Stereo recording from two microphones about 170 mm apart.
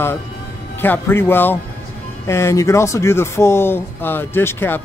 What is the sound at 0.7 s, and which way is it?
Speech, 10° left (ahead or behind).